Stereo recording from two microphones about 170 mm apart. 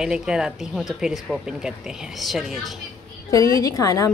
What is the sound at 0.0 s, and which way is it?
Speech, 5° right (ahead or behind).